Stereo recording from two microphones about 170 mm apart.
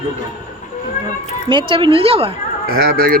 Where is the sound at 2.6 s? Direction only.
60° right (ahead or behind).